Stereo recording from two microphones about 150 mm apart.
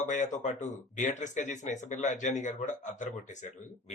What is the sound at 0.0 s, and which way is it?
Speech, 55° left (ahead or behind).